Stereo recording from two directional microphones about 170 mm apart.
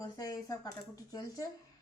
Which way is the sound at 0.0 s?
20° left (ahead or behind).